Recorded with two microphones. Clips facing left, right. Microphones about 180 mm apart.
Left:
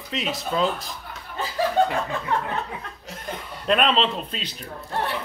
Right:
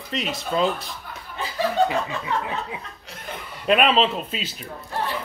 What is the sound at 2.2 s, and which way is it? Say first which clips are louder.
Speech: left 1 dB; 5° right (ahead or behind).